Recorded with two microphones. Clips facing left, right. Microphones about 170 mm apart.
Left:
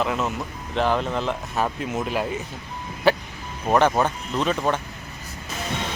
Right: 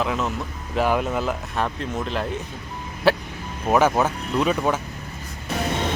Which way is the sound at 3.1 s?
Centre (ahead or behind).